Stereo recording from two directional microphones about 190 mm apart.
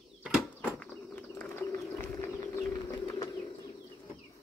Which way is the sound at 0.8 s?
5° left (ahead or behind).